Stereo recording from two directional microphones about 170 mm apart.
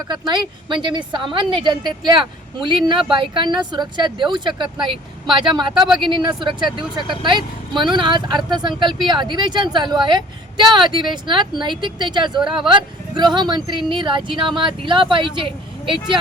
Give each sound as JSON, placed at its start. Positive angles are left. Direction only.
{"t": 0.1, "sound": "speech", "side_deg": -25}